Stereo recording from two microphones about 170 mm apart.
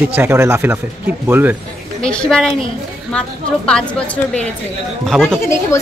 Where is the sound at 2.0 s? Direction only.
5° left (ahead or behind).